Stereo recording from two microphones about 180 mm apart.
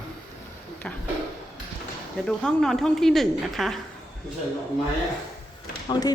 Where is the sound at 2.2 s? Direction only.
5° left (ahead or behind).